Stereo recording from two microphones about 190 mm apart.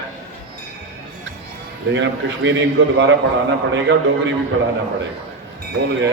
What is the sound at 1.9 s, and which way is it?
A man's voice, 70° right (ahead or behind).